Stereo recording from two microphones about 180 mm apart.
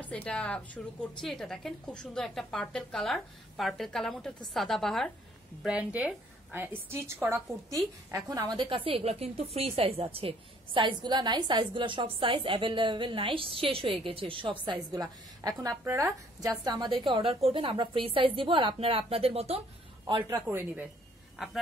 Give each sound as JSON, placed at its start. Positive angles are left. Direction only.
{"t": 0.0, "sound": "a woman's voice", "side_deg": 10}
{"t": 8.4, "sound": "a woman's voice", "side_deg": -25}
{"t": 20.2, "sound": "a woman's voice", "side_deg": -15}